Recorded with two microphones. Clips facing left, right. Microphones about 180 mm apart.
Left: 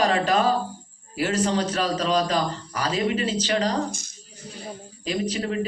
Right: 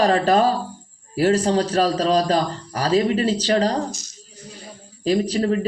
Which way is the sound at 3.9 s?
55° left (ahead or behind).